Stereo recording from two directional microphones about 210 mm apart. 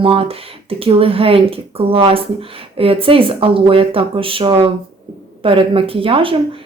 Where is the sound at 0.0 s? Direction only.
25° right (ahead or behind).